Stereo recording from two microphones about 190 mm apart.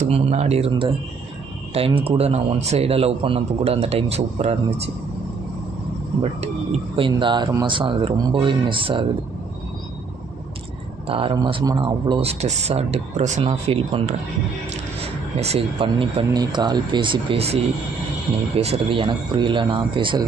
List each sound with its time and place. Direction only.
0.0 s speech: 35° right (ahead or behind)
2.0 s speech: 30° right (ahead or behind)
6.4 s speech: 30° right (ahead or behind)
11.1 s speech: 30° right (ahead or behind)
15.4 s speech: 30° right (ahead or behind)